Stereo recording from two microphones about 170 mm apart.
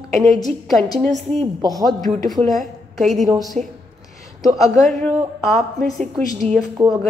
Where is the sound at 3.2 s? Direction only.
20° right (ahead or behind).